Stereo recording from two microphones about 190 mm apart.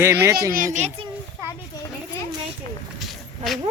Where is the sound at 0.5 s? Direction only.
40° right (ahead or behind).